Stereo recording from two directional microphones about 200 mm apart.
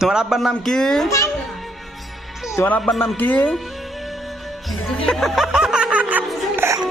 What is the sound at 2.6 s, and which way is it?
Speech, 5° left (ahead or behind).